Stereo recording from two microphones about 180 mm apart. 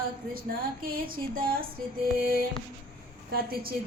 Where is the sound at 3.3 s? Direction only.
55° right (ahead or behind).